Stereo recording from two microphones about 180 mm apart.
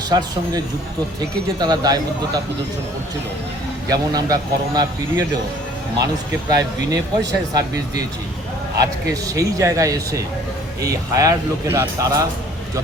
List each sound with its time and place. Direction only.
0.1 s speech: 25° right (ahead or behind)
3.8 s speech: 20° right (ahead or behind)
6.6 s speech: 20° right (ahead or behind)
9.0 s speech: 20° right (ahead or behind)